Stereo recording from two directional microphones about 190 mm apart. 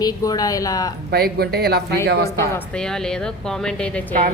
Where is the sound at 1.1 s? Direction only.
55° right (ahead or behind).